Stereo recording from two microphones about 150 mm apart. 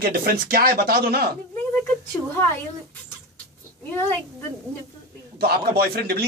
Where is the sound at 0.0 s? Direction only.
90° right.